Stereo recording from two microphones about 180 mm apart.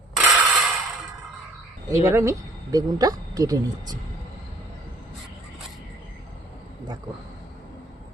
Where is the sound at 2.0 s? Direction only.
15° right (ahead or behind).